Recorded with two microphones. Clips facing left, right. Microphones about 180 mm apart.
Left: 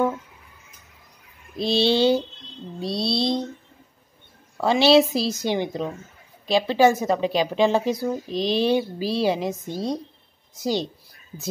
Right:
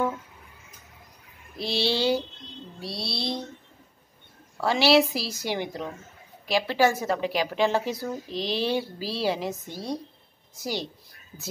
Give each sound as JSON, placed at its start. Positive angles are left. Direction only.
{"t": 1.6, "sound": "a woman's voice", "side_deg": 20}
{"t": 2.8, "sound": "a sound", "side_deg": 20}
{"t": 4.6, "sound": "a woman's voice", "side_deg": 20}